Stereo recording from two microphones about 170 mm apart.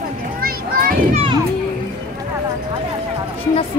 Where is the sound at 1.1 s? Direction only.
30° right (ahead or behind).